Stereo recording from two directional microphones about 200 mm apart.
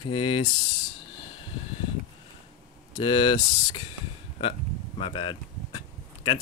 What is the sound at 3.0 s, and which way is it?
Speech, 25° left (ahead or behind).